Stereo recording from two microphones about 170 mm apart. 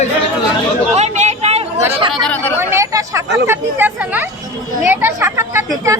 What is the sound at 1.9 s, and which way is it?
Speech, 35° right (ahead or behind).